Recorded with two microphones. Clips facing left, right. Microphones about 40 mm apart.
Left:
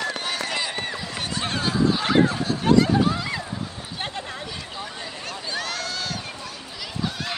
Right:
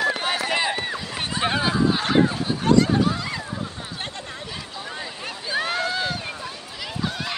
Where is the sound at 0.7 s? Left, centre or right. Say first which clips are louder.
Right 1 dB; centre.